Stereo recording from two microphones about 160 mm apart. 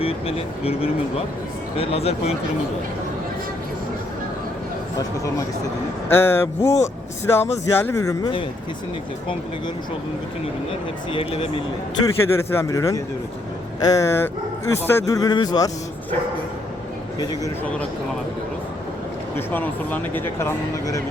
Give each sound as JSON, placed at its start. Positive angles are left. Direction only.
{"t": 0.0, "sound": "speech", "side_deg": 35}
{"t": 6.1, "sound": "speech", "side_deg": 15}
{"t": 10.7, "sound": "speech", "side_deg": 35}
{"t": 12.0, "sound": "speech", "side_deg": 20}
{"t": 19.5, "sound": "speech", "side_deg": 10}